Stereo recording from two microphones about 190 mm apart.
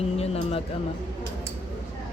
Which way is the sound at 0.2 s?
30° left (ahead or behind).